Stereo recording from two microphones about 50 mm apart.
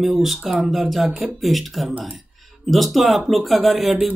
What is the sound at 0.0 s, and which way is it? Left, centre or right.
Speech, centre.